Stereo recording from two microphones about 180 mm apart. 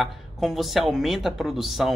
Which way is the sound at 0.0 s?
Centre (ahead or behind).